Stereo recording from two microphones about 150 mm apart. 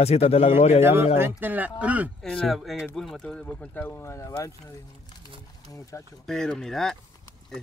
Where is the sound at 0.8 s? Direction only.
15° right (ahead or behind).